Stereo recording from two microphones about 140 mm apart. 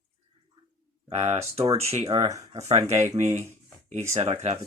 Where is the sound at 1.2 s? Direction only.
45° right (ahead or behind).